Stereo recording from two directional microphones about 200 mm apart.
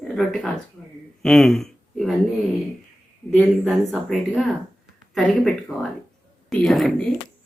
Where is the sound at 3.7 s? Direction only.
Centre (ahead or behind).